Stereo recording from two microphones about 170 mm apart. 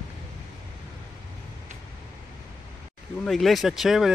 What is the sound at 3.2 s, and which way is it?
Speech, centre (ahead or behind).